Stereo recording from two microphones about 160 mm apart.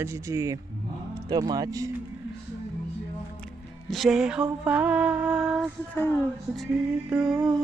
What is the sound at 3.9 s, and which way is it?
Mantra, centre (ahead or behind).